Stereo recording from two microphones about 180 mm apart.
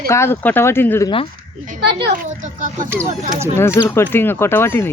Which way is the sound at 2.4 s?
45° right (ahead or behind).